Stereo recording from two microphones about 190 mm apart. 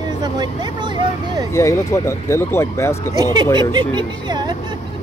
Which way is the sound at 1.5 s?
15° left (ahead or behind).